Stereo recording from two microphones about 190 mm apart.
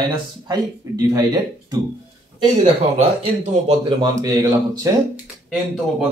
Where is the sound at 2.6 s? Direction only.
35° right (ahead or behind).